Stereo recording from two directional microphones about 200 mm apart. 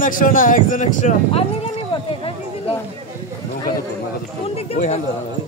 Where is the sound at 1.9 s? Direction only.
25° left (ahead or behind).